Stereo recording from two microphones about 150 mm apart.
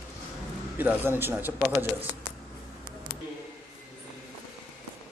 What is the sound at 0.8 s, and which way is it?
Speech, 15° right (ahead or behind).